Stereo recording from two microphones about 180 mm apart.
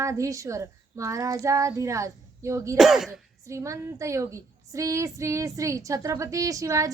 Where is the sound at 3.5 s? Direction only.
15° right (ahead or behind).